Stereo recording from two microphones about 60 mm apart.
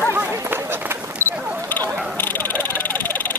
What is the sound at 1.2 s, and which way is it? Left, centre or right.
Camera, right.